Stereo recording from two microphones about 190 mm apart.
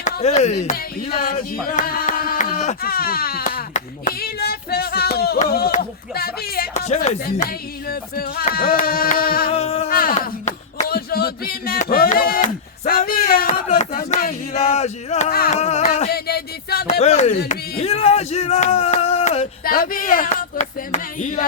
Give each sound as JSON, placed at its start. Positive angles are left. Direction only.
{"t": 0.0, "sound": "speech", "side_deg": 35}
{"t": 1.1, "sound": "speech", "side_deg": 50}
{"t": 6.8, "sound": "speech", "side_deg": 35}
{"t": 7.4, "sound": "speech", "side_deg": 55}
{"t": 9.5, "sound": "speech", "side_deg": 35}
{"t": 9.9, "sound": "speech", "side_deg": 50}
{"t": 14.5, "sound": "speech", "side_deg": 35}
{"t": 15.3, "sound": "speech", "side_deg": 50}
{"t": 15.5, "sound": "speech", "side_deg": 35}
{"t": 16.0, "sound": "a sound", "side_deg": 55}
{"t": 17.0, "sound": "speech", "side_deg": 35}
{"t": 19.6, "sound": "speech", "side_deg": 50}